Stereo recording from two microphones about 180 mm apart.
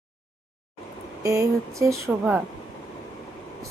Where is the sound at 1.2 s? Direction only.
15° right (ahead or behind).